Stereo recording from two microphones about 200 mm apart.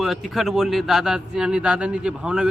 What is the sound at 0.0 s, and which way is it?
Speech, centre (ahead or behind).